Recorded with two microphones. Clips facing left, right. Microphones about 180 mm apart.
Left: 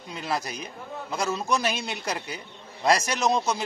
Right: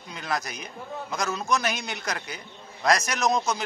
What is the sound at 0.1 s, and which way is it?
A man's voice, 30° left (ahead or behind).